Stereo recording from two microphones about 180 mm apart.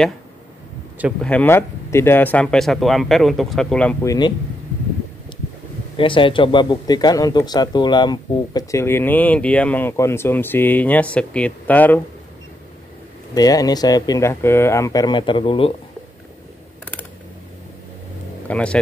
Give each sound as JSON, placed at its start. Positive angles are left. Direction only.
{"t": 1.2, "sound": "speech", "side_deg": 10}
{"t": 4.0, "sound": "speech", "side_deg": 20}
{"t": 5.9, "sound": "a man's voice", "side_deg": 30}
{"t": 13.3, "sound": "speech", "side_deg": 20}
{"t": 18.5, "sound": "speech", "side_deg": 5}